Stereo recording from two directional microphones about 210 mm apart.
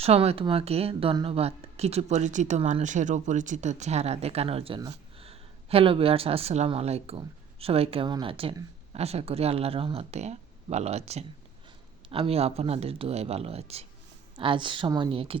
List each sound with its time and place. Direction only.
0.0 s speech: 30° right (ahead or behind)